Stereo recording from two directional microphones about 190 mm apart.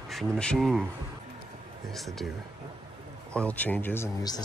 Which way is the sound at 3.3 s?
5° left (ahead or behind).